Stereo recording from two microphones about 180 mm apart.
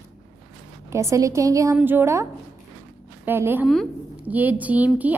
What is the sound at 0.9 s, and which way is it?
A woman's voice, 15° right (ahead or behind).